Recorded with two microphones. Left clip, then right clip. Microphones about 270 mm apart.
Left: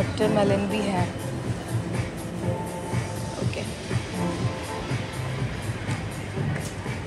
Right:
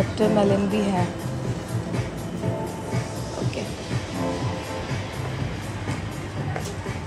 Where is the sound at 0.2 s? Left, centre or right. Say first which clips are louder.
Right 2 dB; centre.